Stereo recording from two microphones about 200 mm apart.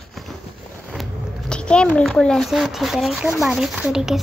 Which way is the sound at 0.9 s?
Centre (ahead or behind).